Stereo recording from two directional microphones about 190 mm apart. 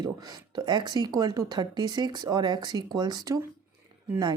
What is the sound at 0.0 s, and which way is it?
Speech, 20° right (ahead or behind).